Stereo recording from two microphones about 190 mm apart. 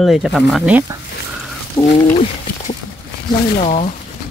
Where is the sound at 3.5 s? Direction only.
35° left (ahead or behind).